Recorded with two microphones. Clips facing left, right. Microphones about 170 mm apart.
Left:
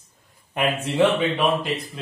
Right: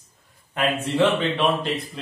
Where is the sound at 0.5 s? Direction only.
15° left (ahead or behind).